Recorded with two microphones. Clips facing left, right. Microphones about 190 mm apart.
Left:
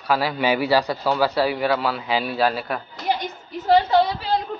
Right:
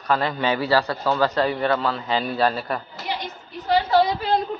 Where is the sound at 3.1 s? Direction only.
45° left (ahead or behind).